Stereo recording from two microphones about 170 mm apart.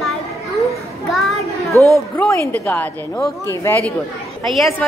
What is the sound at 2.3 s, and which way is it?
A woman's voice, 15° left (ahead or behind).